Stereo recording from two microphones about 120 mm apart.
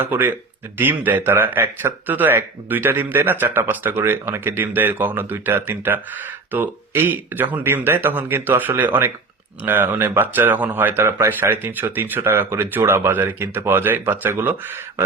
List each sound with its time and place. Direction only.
0.0 s speech: 15° right (ahead or behind)